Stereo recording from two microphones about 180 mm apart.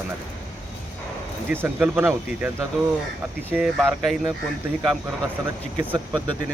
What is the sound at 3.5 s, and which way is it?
Speech, centre (ahead or behind).